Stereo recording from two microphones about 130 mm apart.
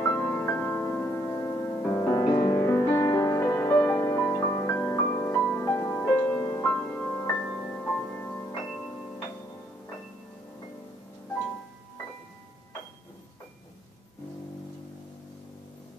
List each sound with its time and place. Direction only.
0.0 s music: 15° left (ahead or behind)
2.4 s music: 20° left (ahead or behind)